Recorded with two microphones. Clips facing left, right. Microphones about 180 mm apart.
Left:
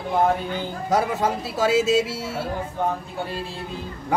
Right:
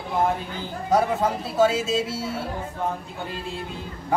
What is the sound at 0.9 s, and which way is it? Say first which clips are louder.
A man's voice: right 1 dB; 75° left (ahead or behind).